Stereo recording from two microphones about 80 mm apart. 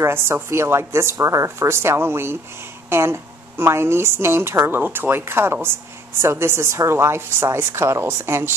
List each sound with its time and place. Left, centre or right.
0.0 s a woman's voice: right